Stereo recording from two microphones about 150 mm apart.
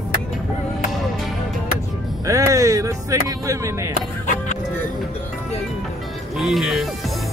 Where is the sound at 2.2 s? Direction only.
20° right (ahead or behind).